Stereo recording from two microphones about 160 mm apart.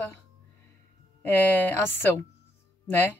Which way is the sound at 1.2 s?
10° left (ahead or behind).